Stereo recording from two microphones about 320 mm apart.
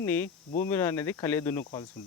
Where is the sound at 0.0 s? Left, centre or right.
Centre.